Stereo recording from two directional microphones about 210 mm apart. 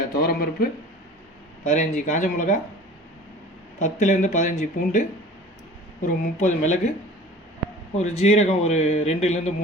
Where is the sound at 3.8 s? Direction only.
35° left (ahead or behind).